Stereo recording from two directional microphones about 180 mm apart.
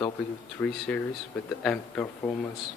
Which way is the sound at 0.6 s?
5° left (ahead or behind).